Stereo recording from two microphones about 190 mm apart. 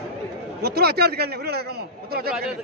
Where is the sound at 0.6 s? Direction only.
55° right (ahead or behind).